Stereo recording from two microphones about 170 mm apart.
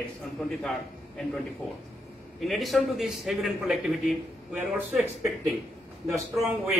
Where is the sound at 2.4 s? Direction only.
Centre (ahead or behind).